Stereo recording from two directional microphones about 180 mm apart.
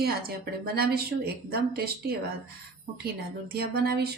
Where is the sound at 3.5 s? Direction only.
60° right (ahead or behind).